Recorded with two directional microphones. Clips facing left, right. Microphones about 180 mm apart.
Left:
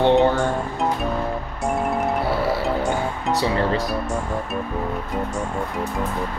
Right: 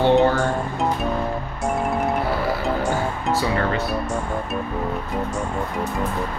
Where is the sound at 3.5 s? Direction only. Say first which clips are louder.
Left 1 dB; 35° left (ahead or behind).